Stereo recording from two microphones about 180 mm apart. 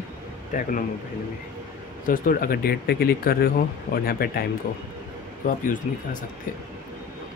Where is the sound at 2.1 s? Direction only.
50° left (ahead or behind).